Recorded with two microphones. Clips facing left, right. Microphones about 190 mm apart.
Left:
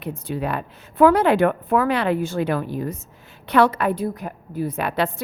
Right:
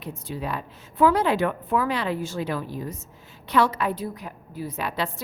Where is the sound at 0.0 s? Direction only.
60° left (ahead or behind).